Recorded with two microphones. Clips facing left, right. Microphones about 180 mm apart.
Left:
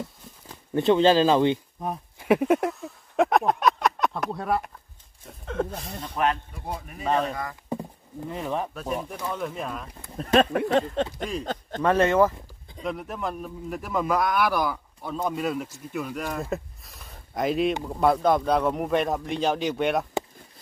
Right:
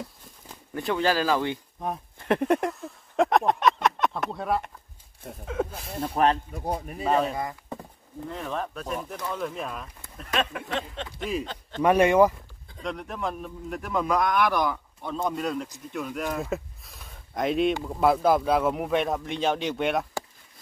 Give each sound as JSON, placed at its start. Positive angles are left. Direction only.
{"t": 0.7, "sound": "speech", "side_deg": 25}
{"t": 1.8, "sound": "a sound", "side_deg": 5}
{"t": 5.4, "sound": "speech", "side_deg": -5}
{"t": 6.0, "sound": "a man's voice", "side_deg": -35}
{"t": 7.1, "sound": "speech", "side_deg": -5}
{"t": 8.3, "sound": "speech", "side_deg": 15}
{"t": 10.1, "sound": "speech", "side_deg": 40}
{"t": 11.8, "sound": "speech", "side_deg": -15}
{"t": 12.8, "sound": "speech", "side_deg": 5}